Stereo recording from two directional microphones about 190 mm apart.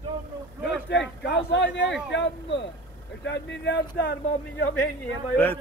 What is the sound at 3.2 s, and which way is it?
Speech, 65° left (ahead or behind).